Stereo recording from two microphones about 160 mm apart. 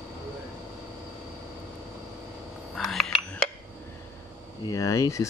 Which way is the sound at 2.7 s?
Centre (ahead or behind).